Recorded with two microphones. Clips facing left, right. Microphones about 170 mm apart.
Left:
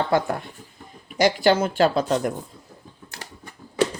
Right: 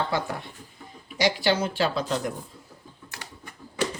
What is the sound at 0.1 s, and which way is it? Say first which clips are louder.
Speech: left 7 dB; 50° left (ahead or behind).